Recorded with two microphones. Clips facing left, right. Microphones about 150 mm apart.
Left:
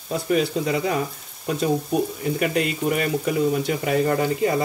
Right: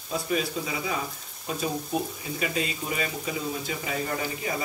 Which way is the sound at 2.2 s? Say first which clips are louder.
Left 8 dB; 60° left (ahead or behind).